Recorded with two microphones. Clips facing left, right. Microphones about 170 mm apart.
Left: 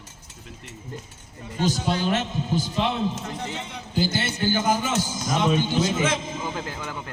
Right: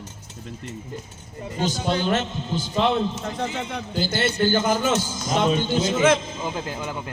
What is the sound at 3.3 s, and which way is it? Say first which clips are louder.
A man's voice: right 5 dB; 60° right (ahead or behind).